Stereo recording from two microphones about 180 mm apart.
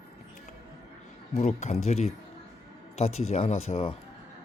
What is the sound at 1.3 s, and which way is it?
Speech, 40° left (ahead or behind).